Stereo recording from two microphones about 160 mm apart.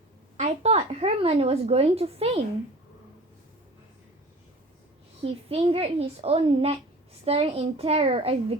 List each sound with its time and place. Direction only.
0.3 s speech: 45° right (ahead or behind)
5.2 s a child's voice: 40° right (ahead or behind)